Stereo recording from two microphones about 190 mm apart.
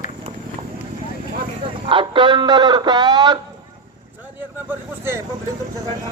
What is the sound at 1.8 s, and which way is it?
Speech, 25° right (ahead or behind).